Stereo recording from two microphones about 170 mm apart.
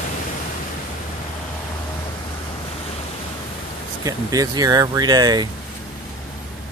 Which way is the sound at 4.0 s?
20° right (ahead or behind).